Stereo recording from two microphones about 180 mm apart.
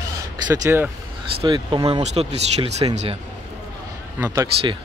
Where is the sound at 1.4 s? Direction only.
25° right (ahead or behind).